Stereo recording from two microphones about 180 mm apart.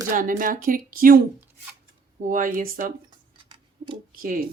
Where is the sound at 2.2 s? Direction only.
50° right (ahead or behind).